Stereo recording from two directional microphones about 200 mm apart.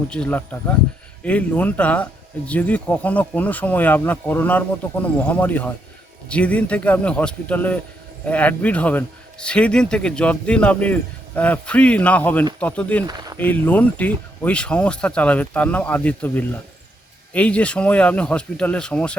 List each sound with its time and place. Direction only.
0.1 s speech: 5° left (ahead or behind)
13.1 s speech: 20° right (ahead or behind)
13.4 s speech: 10° left (ahead or behind)